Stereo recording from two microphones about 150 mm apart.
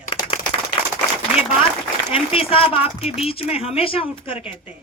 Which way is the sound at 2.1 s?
40° left (ahead or behind).